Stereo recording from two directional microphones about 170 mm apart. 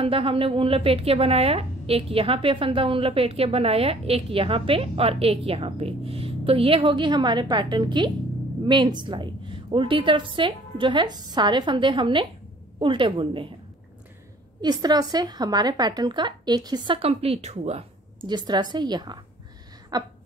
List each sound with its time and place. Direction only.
0.0 s a woman's voice: 35° right (ahead or behind)
14.6 s a woman's voice: 25° right (ahead or behind); by 17.8 s 40° right (ahead or behind)
18.2 s a woman's voice: 25° right (ahead or behind)